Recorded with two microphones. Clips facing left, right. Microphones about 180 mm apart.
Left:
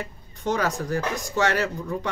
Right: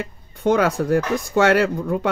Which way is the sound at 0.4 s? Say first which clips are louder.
Right 7 dB; 55° right (ahead or behind).